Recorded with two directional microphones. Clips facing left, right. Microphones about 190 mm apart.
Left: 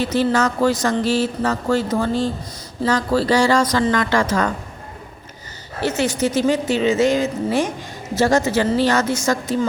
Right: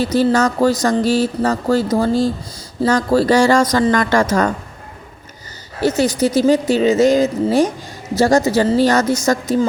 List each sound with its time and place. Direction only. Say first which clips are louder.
0.0 s a woman's voice: right 3 dB; 40° right (ahead or behind)
6.0 s speech: right 3 dB; 35° right (ahead or behind)